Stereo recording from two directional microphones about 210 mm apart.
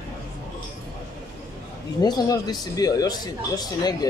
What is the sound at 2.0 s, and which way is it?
A man's voice, 20° left (ahead or behind).